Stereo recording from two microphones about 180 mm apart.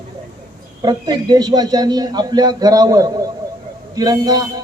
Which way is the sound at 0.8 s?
20° right (ahead or behind).